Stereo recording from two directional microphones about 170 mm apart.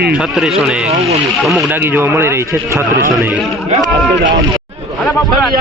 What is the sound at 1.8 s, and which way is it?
A man's voice, 10° right (ahead or behind).